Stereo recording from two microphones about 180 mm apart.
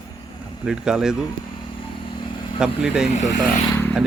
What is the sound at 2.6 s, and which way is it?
Speech, 5° right (ahead or behind).